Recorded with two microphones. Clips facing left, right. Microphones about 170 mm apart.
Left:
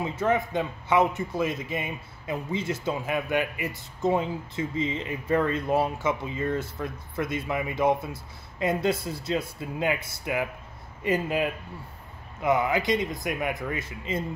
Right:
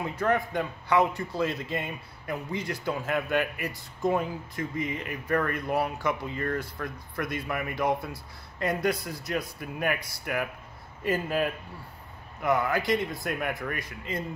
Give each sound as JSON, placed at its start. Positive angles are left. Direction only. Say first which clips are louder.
{"t": 0.0, "sound": "a man's voice", "louder": "left 1 dB", "side_deg": 20}